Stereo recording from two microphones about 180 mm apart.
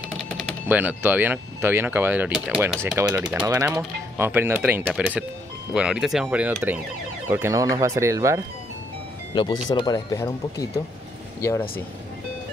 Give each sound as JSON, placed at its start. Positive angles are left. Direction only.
{"t": 0.7, "sound": "speech", "side_deg": -10}
{"t": 9.3, "sound": "speech", "side_deg": 25}